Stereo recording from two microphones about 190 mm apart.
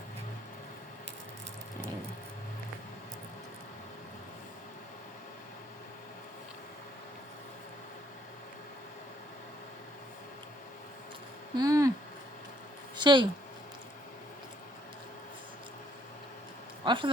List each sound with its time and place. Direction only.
11.5 s speech: 20° right (ahead or behind)
13.0 s speech: 25° right (ahead or behind)
16.8 s a sound: 25° right (ahead or behind)